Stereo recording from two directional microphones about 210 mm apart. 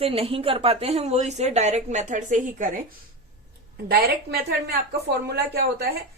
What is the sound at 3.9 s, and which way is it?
A woman's voice, 50° right (ahead or behind).